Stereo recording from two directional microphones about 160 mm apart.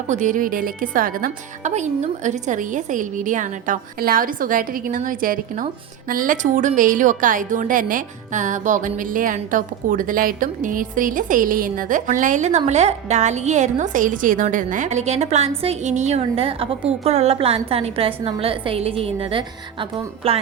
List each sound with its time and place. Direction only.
0.1 s a woman's voice: 50° right (ahead or behind); by 20.4 s 35° right (ahead or behind)